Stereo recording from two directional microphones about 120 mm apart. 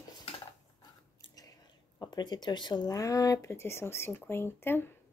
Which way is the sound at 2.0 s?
35° left (ahead or behind).